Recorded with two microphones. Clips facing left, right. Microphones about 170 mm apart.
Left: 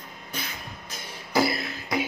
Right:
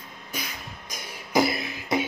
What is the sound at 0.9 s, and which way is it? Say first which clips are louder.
Beatboxing: right 2 dB; 15° right (ahead or behind).